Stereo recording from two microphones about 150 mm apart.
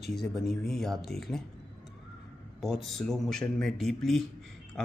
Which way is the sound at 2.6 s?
Centre (ahead or behind).